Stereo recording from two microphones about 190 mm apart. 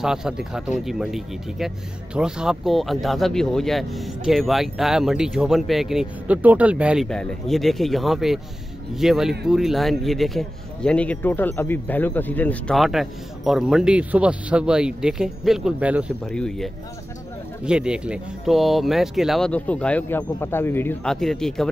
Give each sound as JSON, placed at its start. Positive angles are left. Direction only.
{"t": 0.0, "sound": "a man's voice", "side_deg": -5}
{"t": 16.3, "sound": "a man's voice", "side_deg": 5}